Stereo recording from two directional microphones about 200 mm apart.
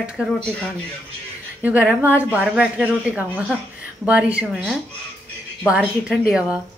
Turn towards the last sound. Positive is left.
turn(degrees=-5)  # may be behind; listen again after turning